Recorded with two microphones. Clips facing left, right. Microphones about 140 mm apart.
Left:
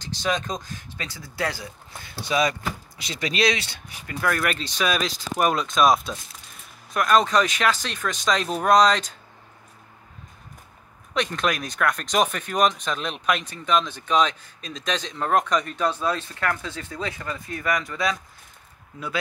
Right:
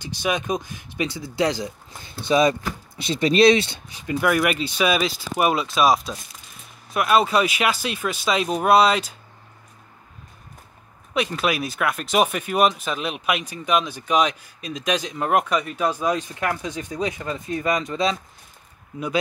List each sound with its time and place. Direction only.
0.0 s speech: 10° right (ahead or behind)
11.1 s speech: 5° right (ahead or behind); by 18.2 s 20° right (ahead or behind)